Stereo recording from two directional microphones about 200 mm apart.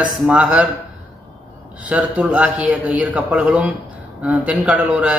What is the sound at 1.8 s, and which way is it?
A man's voice, 5° right (ahead or behind).